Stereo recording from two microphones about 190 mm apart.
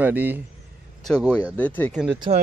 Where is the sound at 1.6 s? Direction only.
10° left (ahead or behind).